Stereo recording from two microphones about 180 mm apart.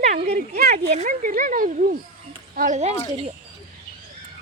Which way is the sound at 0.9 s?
50° right (ahead or behind).